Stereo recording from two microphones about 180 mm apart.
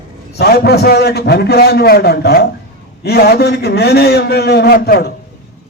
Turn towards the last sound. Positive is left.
turn(degrees=55)  # may be behind; listen again after turning